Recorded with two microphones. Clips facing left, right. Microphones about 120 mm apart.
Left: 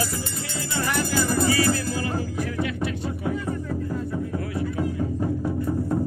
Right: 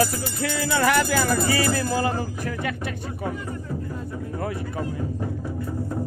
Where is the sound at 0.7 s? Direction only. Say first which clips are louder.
Right 4 dB; 80° right.